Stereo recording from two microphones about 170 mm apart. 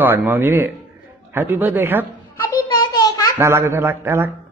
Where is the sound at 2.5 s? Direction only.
20° left (ahead or behind).